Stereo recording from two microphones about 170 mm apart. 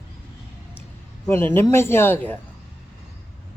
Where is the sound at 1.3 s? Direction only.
10° left (ahead or behind).